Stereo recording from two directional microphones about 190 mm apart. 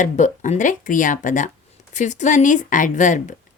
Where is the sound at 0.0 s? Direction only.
40° left (ahead or behind).